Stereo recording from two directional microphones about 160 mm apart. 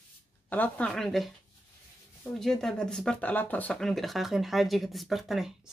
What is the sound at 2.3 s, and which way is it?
Speech, 5° left (ahead or behind).